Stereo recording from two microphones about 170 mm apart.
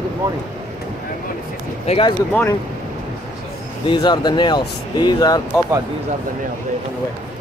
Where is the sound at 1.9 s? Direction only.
40° left (ahead or behind).